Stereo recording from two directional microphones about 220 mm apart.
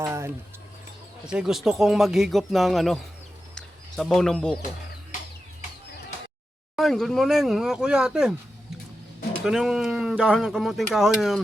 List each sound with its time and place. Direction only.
0.0 s a sound: 10° right (ahead or behind)
1.2 s speech: 5° right (ahead or behind)
3.5 s bird: centre (ahead or behind)
6.7 s speech: centre (ahead or behind)
9.4 s speech: centre (ahead or behind)